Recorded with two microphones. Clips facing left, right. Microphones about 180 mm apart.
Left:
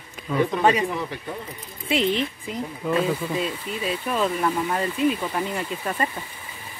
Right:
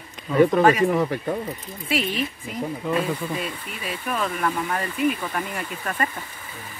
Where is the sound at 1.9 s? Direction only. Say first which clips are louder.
Left 3 dB; 25° left (ahead or behind).